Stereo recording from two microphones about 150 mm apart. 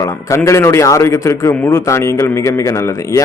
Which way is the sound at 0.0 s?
20° left (ahead or behind).